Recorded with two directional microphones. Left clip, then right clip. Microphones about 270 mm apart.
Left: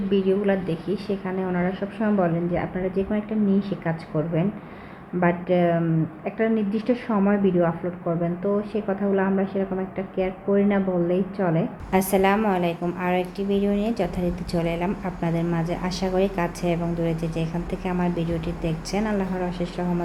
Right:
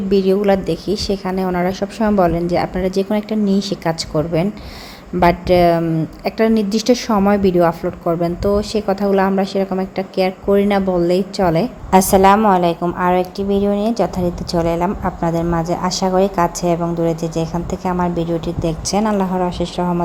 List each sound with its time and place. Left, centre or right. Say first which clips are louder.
0.1 s a woman's voice: right 8 dB; right